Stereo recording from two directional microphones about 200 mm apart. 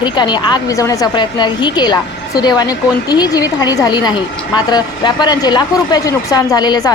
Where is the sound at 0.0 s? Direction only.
20° left (ahead or behind).